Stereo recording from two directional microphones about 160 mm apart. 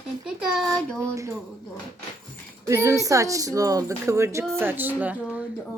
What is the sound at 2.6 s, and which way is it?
A woman's voice, 20° right (ahead or behind).